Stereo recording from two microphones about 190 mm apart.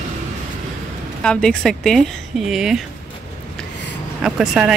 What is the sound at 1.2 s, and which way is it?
Speech, 5° left (ahead or behind).